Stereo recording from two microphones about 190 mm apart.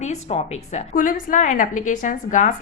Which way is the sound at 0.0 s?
35° left (ahead or behind).